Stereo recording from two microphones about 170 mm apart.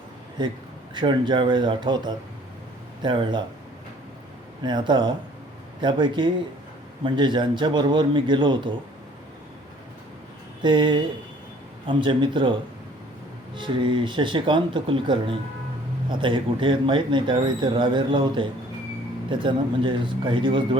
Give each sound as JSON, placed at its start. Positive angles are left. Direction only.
{"t": 0.9, "sound": "speech", "side_deg": -25}
{"t": 4.6, "sound": "speech", "side_deg": -25}
{"t": 10.6, "sound": "speech", "side_deg": -25}
{"t": 13.6, "sound": "speech", "side_deg": -30}